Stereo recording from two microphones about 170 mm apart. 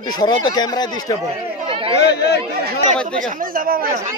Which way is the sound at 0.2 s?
25° left (ahead or behind).